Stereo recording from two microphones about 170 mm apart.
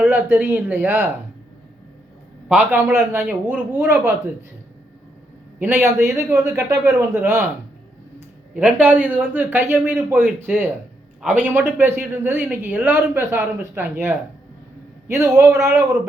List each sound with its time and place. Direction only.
0.0 s speech: 10° right (ahead or behind)
2.5 s speech: 10° right (ahead or behind)
5.5 s speech: 10° right (ahead or behind)
8.5 s speech: 10° right (ahead or behind)